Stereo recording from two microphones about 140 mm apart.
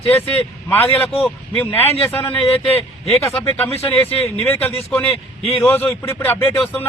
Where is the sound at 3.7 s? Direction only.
45° left (ahead or behind).